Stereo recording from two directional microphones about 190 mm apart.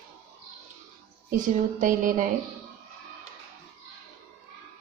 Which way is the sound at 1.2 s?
45° right (ahead or behind).